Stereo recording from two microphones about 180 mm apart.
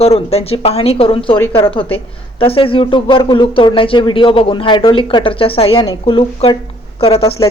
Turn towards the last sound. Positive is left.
turn(degrees=35)  # may be behind; listen again after turning